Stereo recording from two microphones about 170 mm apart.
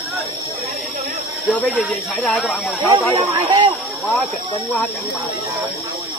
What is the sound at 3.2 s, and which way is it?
Speech, 30° right (ahead or behind).